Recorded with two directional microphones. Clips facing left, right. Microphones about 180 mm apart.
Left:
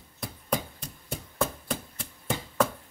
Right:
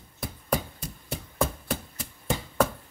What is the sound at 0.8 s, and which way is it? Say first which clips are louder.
Hands: right 2 dB; 5° right (ahead or behind).